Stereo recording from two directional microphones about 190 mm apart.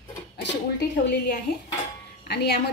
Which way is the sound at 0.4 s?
65° left (ahead or behind).